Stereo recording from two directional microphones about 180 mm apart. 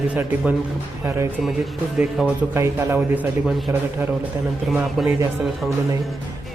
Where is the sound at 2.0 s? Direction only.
10° right (ahead or behind).